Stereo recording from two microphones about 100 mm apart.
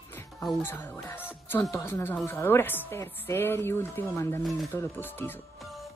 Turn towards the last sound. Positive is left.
turn(degrees=20)  # may be behind; listen again after turning